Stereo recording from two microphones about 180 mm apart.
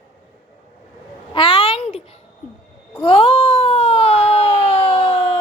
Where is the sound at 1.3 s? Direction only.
30° left (ahead or behind).